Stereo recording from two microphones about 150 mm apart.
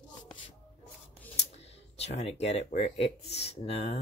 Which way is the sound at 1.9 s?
45° left (ahead or behind).